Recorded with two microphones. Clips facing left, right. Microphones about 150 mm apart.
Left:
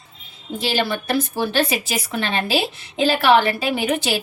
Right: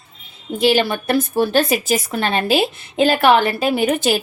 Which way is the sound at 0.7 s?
50° right (ahead or behind).